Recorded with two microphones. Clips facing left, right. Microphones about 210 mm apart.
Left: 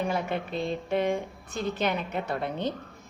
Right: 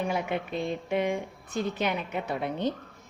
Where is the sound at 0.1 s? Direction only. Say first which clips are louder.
Even; 15° right (ahead or behind).